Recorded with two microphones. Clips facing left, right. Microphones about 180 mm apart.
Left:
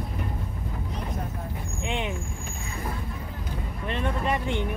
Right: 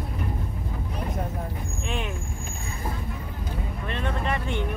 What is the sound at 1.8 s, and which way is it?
Speech, 20° left (ahead or behind).